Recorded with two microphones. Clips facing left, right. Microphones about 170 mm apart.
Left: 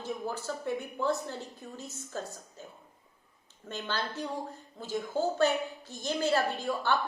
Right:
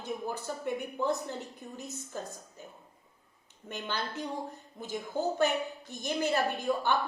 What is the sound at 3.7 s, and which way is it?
A woman's voice, 15° right (ahead or behind).